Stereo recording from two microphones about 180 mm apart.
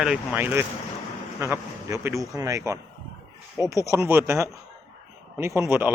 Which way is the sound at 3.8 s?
15° right (ahead or behind).